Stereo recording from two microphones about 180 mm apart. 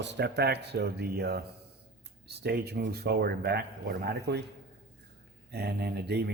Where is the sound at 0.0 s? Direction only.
75° right (ahead or behind).